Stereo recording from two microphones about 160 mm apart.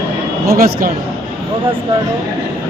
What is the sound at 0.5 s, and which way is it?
Speech, 65° right (ahead or behind).